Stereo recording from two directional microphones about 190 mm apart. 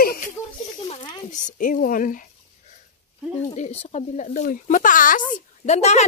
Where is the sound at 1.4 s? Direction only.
45° left (ahead or behind).